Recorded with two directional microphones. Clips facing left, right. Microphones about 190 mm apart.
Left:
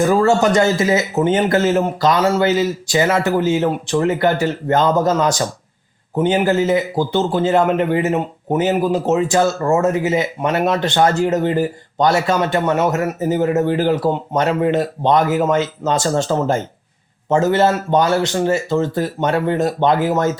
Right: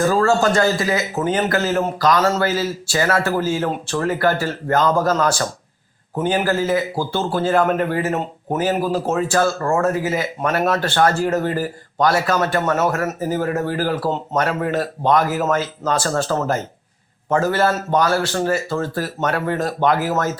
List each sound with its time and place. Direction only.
0.0 s speech: 20° left (ahead or behind)
2.1 s a man's voice: 10° left (ahead or behind)